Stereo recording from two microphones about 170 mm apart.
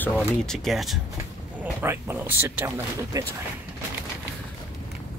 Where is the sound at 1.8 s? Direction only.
15° right (ahead or behind).